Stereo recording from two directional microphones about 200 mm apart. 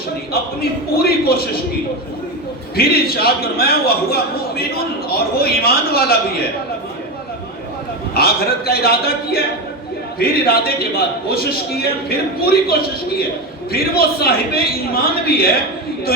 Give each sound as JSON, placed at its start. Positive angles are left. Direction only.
{"t": 0.6, "sound": "a man's voice", "side_deg": 50}
{"t": 2.7, "sound": "a man's voice", "side_deg": 50}
{"t": 8.1, "sound": "a man's voice", "side_deg": 50}